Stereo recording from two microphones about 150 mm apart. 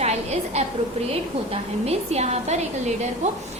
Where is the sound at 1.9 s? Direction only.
45° right (ahead or behind).